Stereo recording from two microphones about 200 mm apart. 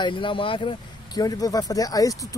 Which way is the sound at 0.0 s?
25° left (ahead or behind).